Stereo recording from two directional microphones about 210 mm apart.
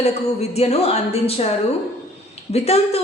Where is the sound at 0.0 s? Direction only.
30° left (ahead or behind).